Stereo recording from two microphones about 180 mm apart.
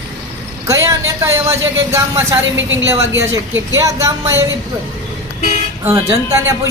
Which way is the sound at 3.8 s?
15° right (ahead or behind).